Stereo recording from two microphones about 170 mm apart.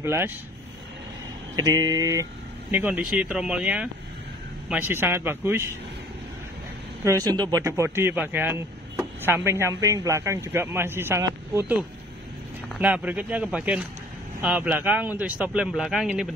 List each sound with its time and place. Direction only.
0.0 s a man's voice: 15° right (ahead or behind)
1.6 s speech: 20° right (ahead or behind)
2.7 s a man's voice: 10° right (ahead or behind)
7.1 s a man's voice: 20° right (ahead or behind); by 16.3 s 5° right (ahead or behind)